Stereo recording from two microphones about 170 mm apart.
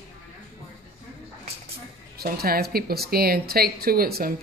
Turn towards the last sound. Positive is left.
turn(degrees=-60)  # may be behind; listen again after turning